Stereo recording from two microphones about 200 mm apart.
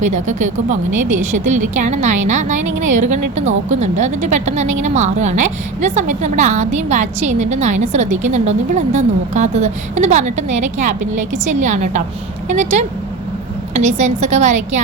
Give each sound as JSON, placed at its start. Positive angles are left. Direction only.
{"t": 0.0, "sound": "a woman's voice", "side_deg": -40}